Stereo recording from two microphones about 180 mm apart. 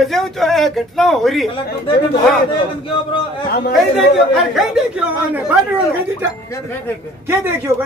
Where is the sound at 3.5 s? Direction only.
55° left (ahead or behind).